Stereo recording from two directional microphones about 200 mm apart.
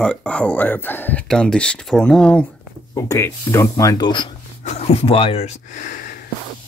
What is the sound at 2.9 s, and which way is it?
Speech, 15° left (ahead or behind).